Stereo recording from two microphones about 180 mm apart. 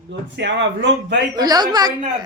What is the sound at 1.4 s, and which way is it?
Speech, 20° right (ahead or behind).